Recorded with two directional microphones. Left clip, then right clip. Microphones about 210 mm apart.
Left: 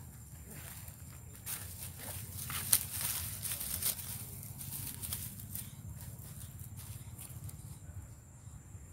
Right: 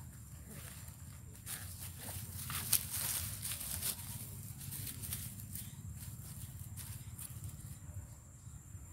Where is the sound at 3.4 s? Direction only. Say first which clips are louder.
Left 3 dB; 35° left (ahead or behind).